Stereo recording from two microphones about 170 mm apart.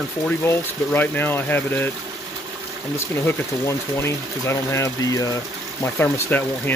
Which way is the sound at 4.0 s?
15° left (ahead or behind).